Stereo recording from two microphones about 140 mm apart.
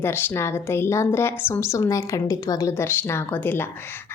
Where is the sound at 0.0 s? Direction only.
15° left (ahead or behind).